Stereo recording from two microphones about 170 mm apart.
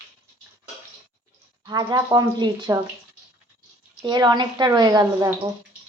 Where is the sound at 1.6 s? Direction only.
25° right (ahead or behind).